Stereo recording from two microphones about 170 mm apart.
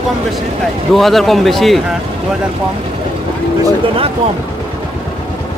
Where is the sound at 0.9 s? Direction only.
Centre (ahead or behind).